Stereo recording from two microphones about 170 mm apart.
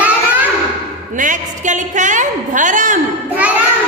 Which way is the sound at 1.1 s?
50° right (ahead or behind).